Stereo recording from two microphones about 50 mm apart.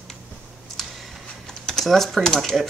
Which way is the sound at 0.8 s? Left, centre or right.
Centre.